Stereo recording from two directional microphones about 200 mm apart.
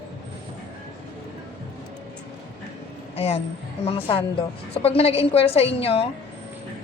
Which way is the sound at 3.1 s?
30° left (ahead or behind).